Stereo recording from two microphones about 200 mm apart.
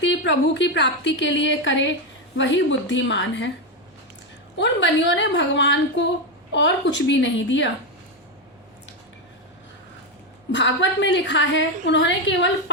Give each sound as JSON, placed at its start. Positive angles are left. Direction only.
{"t": 0.0, "sound": "a woman's voice", "side_deg": 65}
{"t": 4.5, "sound": "a woman's voice", "side_deg": 65}
{"t": 10.5, "sound": "a woman's voice", "side_deg": 65}